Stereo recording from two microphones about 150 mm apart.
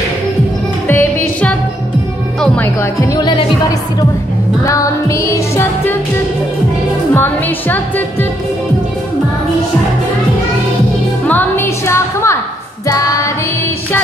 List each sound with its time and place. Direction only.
0.8 s music: 15° left (ahead or behind)
4.6 s music: 20° left (ahead or behind)
7.2 s speech: 10° left (ahead or behind)
11.2 s music: 15° left (ahead or behind)